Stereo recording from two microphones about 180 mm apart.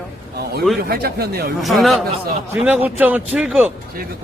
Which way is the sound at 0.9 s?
60° right (ahead or behind).